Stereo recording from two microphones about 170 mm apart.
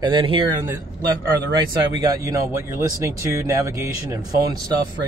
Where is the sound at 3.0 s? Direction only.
15° right (ahead or behind).